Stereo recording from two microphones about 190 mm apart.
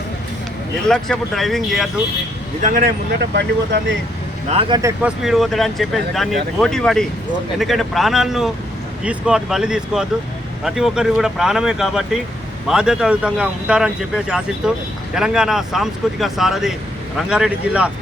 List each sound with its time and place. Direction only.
0.9 s a man's voice: 5° left (ahead or behind)
2.6 s speech: 45° right (ahead or behind)
3.2 s speech: 65° right (ahead or behind)
4.4 s speech: 30° right (ahead or behind)
4.8 s speech: 15° right (ahead or behind)
5.2 s a man's voice: centre (ahead or behind)